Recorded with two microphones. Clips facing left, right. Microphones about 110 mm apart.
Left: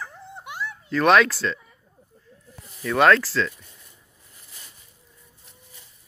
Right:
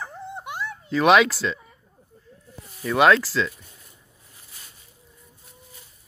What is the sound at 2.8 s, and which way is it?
Speech, 5° right (ahead or behind).